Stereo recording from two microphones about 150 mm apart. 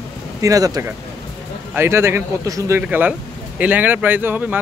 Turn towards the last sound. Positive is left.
turn(degrees=-10)  # may be behind; listen again after turning